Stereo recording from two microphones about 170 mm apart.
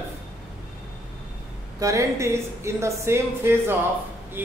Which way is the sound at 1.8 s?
20° right (ahead or behind).